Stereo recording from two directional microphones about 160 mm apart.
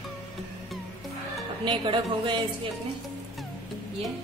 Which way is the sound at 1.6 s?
30° right (ahead or behind).